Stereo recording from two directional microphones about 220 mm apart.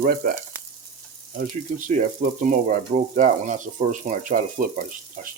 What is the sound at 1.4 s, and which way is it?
Speech, 40° right (ahead or behind).